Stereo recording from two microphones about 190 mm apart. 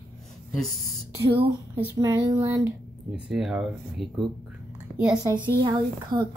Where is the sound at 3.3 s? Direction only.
Centre (ahead or behind).